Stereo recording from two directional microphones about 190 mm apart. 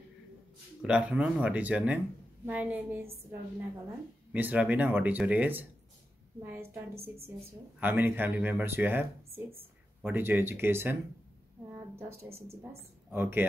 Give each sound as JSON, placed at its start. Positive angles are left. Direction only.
{"t": 0.8, "sound": "speech", "side_deg": -5}
{"t": 7.8, "sound": "speech", "side_deg": -10}
{"t": 9.3, "sound": "speech", "side_deg": -30}
{"t": 10.0, "sound": "a woman's voice", "side_deg": -10}